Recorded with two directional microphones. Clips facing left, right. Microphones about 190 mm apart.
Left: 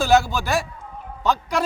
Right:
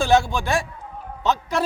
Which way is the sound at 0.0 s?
Centre (ahead or behind).